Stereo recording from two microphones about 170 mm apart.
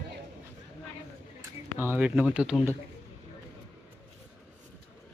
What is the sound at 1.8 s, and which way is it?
Speech, 10° right (ahead or behind).